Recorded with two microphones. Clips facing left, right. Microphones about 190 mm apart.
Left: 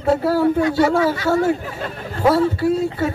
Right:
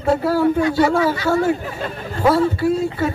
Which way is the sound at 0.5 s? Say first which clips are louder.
Even; 45° left (ahead or behind).